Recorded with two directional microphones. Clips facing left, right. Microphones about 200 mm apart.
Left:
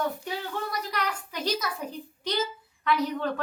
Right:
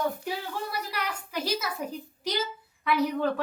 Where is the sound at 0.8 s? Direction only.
10° right (ahead or behind).